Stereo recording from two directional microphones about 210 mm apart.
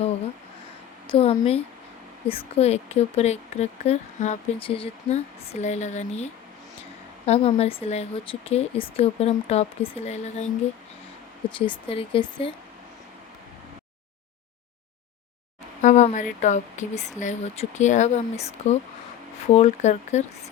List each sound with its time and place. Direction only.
1.1 s speech: 30° left (ahead or behind)
11.5 s speech: 25° left (ahead or behind)
15.8 s speech: 35° left (ahead or behind)